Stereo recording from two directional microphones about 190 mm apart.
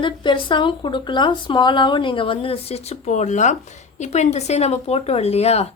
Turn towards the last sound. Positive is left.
turn(degrees=35)  # may be behind; listen again after turning